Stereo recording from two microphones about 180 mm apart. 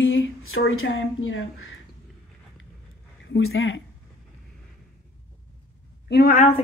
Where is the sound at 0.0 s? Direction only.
90° left.